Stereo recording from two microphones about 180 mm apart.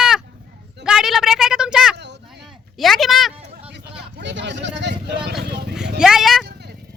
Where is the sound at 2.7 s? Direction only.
Centre (ahead or behind).